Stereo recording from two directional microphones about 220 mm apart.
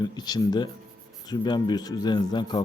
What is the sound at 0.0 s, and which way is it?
A man's voice, 20° left (ahead or behind).